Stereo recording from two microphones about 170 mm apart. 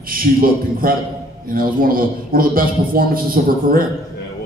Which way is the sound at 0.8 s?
60° right (ahead or behind).